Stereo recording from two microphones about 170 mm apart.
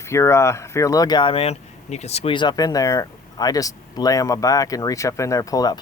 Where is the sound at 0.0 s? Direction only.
15° left (ahead or behind).